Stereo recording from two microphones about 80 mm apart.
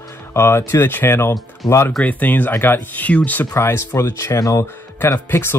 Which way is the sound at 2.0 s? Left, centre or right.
Centre.